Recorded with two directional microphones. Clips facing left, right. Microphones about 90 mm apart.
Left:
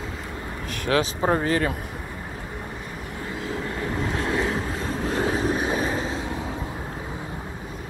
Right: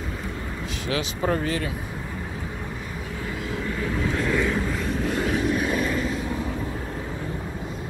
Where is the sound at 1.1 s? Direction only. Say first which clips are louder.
Left 3 dB; 35° left (ahead or behind).